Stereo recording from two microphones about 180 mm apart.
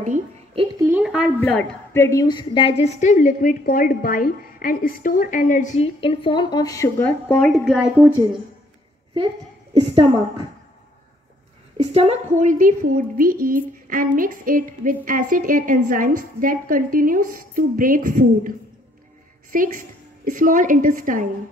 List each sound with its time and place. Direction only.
0.8 s a sound: 5° right (ahead or behind)
1.4 s a woman's voice: 5° left (ahead or behind); by 5.9 s 45° left (ahead or behind)
5.9 s a woman's voice: 30° left (ahead or behind); by 8.1 s centre (ahead or behind)
9.8 s a woman's voice: 30° right (ahead or behind)
11.7 s a woman's voice: 35° right (ahead or behind); by 18.5 s 50° right (ahead or behind)
19.5 s a woman's voice: 50° right (ahead or behind)